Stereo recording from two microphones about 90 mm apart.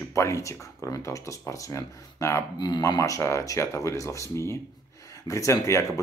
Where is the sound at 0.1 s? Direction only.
35° left (ahead or behind).